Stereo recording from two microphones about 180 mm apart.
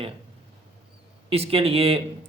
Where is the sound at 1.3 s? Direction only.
30° right (ahead or behind).